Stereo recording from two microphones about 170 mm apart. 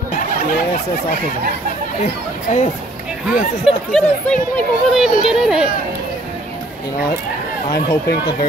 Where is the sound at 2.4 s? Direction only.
45° left (ahead or behind).